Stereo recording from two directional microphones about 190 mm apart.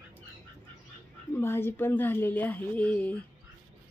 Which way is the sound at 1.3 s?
10° left (ahead or behind).